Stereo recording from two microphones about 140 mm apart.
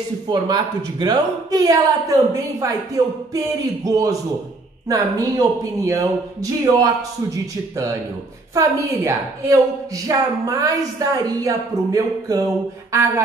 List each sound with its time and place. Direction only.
0.3 s a woman's voice: 30° right (ahead or behind)
8.5 s a woman's voice: 25° right (ahead or behind)